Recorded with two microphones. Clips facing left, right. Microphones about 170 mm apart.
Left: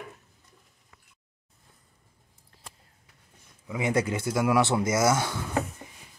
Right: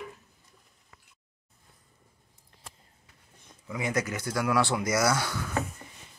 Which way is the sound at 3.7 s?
25° left (ahead or behind).